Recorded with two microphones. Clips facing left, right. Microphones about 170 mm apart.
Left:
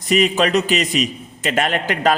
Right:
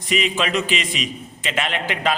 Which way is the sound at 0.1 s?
40° left (ahead or behind).